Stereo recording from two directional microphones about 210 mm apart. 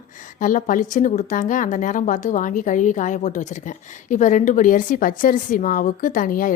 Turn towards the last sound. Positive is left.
turn(degrees=40)  # may be behind; listen again after turning